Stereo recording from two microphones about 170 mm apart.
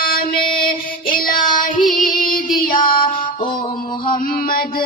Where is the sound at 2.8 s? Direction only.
30° left (ahead or behind).